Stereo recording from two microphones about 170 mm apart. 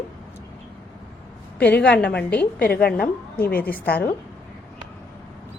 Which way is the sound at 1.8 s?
5° left (ahead or behind).